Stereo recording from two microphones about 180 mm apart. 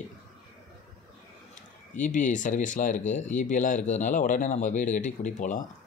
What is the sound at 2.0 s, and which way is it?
Speech, 45° left (ahead or behind).